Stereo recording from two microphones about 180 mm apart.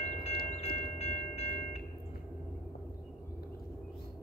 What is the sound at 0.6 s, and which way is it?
Train, 35° left (ahead or behind).